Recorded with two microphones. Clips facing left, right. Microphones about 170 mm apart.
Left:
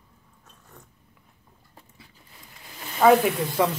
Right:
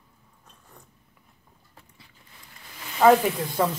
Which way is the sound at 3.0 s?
5° left (ahead or behind).